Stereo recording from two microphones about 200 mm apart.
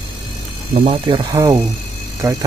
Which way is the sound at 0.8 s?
25° right (ahead or behind).